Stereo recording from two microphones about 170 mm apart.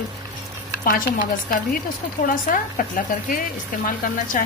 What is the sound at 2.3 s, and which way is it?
A woman's voice, 55° left (ahead or behind).